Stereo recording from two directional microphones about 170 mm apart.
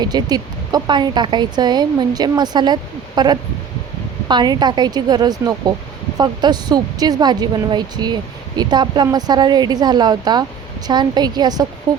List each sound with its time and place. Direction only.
0.0 s speech: 25° right (ahead or behind)